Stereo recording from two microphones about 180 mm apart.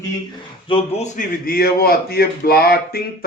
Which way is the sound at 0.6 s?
30° left (ahead or behind).